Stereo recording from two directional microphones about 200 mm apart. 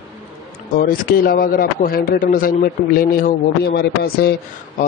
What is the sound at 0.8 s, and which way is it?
A man's voice, 50° left (ahead or behind).